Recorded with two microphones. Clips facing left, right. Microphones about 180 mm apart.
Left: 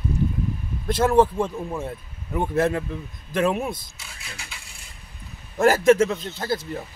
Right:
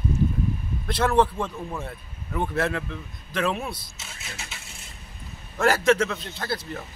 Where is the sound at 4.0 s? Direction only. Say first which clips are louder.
Right 1 dB; 20° right (ahead or behind).